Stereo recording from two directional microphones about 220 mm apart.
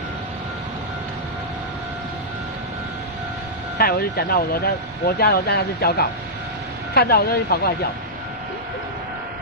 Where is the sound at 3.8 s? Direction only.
45° left (ahead or behind).